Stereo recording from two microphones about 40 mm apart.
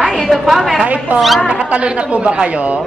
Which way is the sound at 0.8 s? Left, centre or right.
Right.